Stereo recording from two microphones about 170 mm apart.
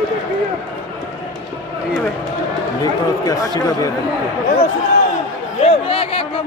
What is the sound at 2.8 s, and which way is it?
Speech, 20° left (ahead or behind).